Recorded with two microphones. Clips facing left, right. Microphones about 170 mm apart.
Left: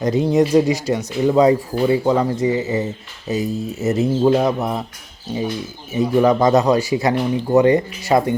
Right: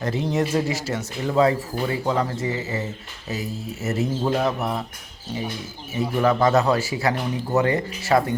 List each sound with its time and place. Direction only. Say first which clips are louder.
0.0 s speech: left 7 dB; 15° left (ahead or behind)
5.9 s speech: left 6 dB; 20° left (ahead or behind)